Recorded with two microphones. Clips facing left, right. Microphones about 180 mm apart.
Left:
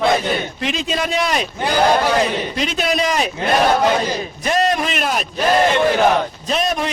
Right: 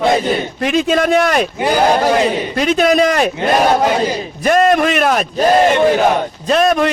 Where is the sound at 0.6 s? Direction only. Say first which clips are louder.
Right 8 dB; 50° right (ahead or behind).